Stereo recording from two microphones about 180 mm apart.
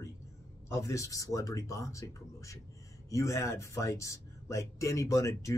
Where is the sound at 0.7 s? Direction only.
15° left (ahead or behind).